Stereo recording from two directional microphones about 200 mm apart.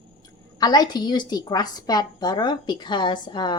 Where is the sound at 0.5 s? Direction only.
20° left (ahead or behind).